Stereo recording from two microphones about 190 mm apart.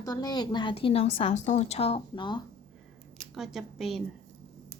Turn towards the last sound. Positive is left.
turn(degrees=0)  # may be behind; listen again after turning